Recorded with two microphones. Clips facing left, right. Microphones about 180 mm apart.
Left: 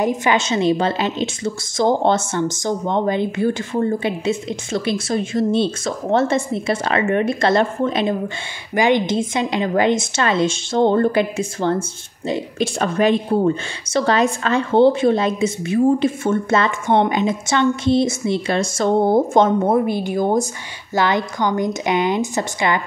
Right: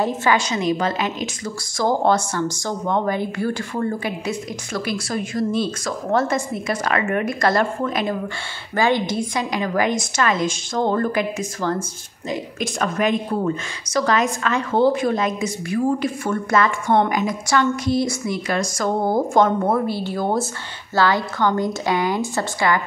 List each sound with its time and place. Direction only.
0.0 s a woman's voice: 15° left (ahead or behind)